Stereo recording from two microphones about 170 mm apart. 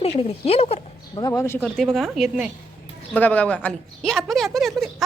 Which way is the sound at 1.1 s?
15° left (ahead or behind).